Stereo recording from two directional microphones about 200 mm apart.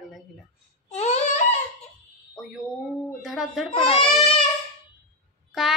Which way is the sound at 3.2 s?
Centre (ahead or behind).